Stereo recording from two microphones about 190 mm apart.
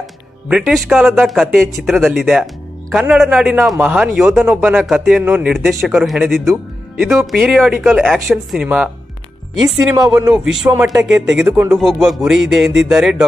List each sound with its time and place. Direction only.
0.5 s a man's voice: 5° right (ahead or behind)
9.8 s speech: 20° right (ahead or behind)
10.5 s a man's voice: centre (ahead or behind)